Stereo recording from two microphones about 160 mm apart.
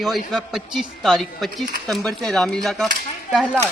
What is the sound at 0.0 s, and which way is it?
Speech, centre (ahead or behind).